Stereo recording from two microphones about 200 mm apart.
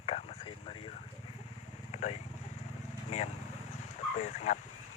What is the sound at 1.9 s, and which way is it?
Vehicle, 30° left (ahead or behind).